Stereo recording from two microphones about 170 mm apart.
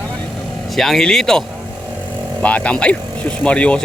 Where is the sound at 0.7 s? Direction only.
Centre (ahead or behind).